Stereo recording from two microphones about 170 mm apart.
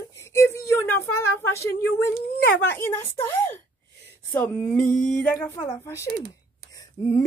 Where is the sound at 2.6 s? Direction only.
15° left (ahead or behind).